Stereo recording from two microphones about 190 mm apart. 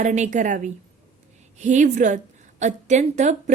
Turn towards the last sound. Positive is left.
turn(degrees=-40)  # may be behind; listen again after turning